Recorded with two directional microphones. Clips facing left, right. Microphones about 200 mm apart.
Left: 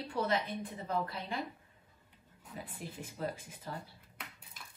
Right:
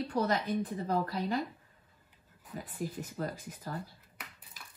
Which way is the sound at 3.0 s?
40° right (ahead or behind).